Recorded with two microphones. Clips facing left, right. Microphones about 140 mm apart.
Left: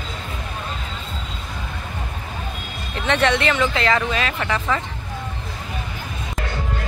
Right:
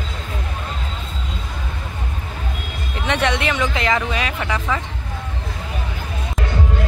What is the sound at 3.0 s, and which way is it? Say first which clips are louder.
Speech: left 1 dB; 15° right (ahead or behind).